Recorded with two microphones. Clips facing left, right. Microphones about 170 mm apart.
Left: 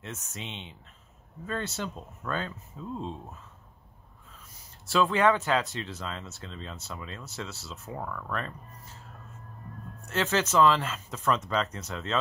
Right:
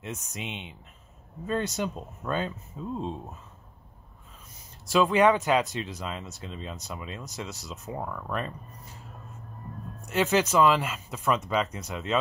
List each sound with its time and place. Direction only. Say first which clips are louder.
0.0 s speech: right 3 dB; 15° right (ahead or behind)
4.8 s speech: right 3 dB; 15° right (ahead or behind)
10.0 s speech: right 4 dB; 15° right (ahead or behind)